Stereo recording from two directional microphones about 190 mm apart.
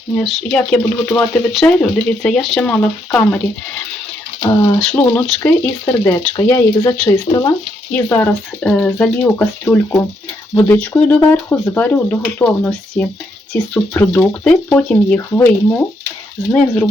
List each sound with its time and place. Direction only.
0.2 s speech: 5° left (ahead or behind)
4.4 s speech: 20° left (ahead or behind)
4.8 s speech: 5° left (ahead or behind)
5.4 s speech: 15° left (ahead or behind)
7.9 s speech: 10° left (ahead or behind)